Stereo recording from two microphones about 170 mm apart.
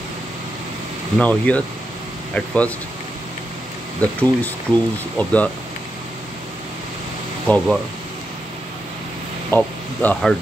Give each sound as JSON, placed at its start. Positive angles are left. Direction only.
{"t": 1.1, "sound": "speech", "side_deg": 5}
{"t": 4.0, "sound": "speech", "side_deg": 10}
{"t": 7.4, "sound": "speech", "side_deg": 5}
{"t": 9.6, "sound": "speech", "side_deg": 5}